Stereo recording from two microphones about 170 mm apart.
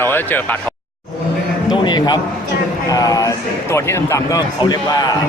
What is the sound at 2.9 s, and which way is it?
A man's voice, 20° left (ahead or behind).